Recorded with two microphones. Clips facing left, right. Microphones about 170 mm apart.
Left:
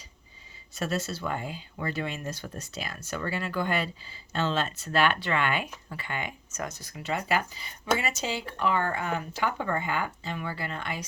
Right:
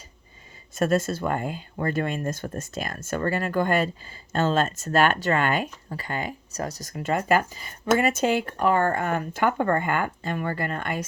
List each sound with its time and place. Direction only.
0.8 s speech: 50° right (ahead or behind)